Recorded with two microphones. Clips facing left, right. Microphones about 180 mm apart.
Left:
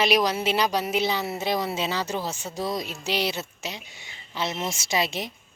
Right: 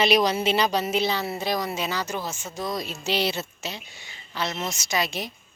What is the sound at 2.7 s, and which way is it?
A woman's voice, 10° left (ahead or behind).